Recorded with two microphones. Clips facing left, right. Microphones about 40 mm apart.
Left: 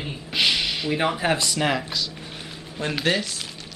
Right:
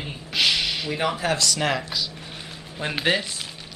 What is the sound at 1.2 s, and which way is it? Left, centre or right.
Speech, left.